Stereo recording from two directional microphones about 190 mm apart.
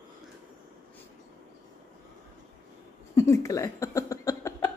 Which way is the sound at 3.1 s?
15° left (ahead or behind).